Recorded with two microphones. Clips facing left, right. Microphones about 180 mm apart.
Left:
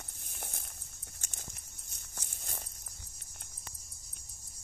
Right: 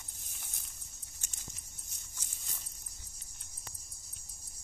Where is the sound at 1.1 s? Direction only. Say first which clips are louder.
Left 7 dB; 55° left (ahead or behind).